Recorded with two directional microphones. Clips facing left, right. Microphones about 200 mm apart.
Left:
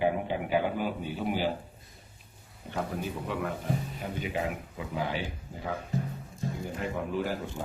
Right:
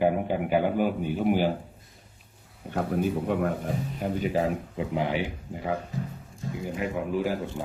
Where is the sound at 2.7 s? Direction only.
50° right (ahead or behind).